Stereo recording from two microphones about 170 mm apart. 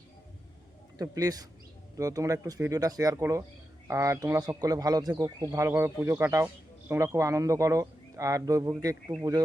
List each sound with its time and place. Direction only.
0.9 s speech: 20° right (ahead or behind)